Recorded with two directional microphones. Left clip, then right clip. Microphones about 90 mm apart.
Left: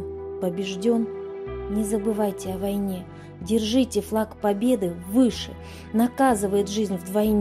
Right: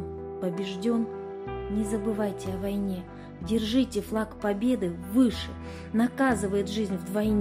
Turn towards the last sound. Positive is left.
turn(degrees=50)  # may be behind; listen again after turning